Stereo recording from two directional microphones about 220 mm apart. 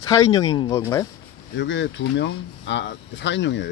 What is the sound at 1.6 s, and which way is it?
Speech, 55° left (ahead or behind).